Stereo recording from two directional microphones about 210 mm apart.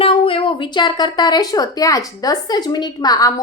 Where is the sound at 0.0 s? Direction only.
25° left (ahead or behind).